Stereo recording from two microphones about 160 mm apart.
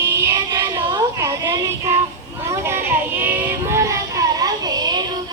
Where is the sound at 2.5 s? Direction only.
15° right (ahead or behind).